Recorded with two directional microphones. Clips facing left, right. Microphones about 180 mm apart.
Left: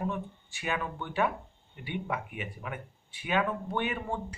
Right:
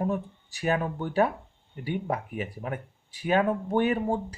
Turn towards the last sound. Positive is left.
turn(degrees=-35)  # may be behind; listen again after turning